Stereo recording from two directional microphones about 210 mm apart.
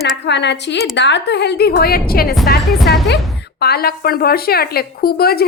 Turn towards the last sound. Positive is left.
turn(degrees=45)  # may be behind; listen again after turning